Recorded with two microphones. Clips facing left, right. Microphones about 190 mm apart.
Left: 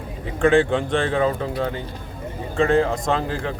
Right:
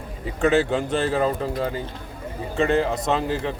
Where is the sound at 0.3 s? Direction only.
5° right (ahead or behind).